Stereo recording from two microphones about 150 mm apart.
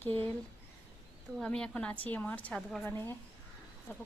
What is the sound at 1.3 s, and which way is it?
A woman's voice, 5° left (ahead or behind).